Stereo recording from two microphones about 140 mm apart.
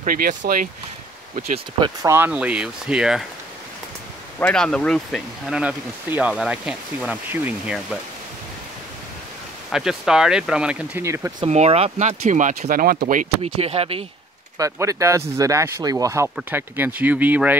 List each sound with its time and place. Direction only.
0.0 s speech: 80° right
2.0 s speech: 15° right (ahead or behind)
4.4 s speech: 5° left (ahead or behind)
5.6 s speech: 10° right (ahead or behind)
9.7 s speech: 5° right (ahead or behind)
11.4 s speech: 45° right (ahead or behind); by 13.3 s 65° right (ahead or behind)
13.4 s speech: 45° right (ahead or behind)
14.6 s speech: 20° right (ahead or behind)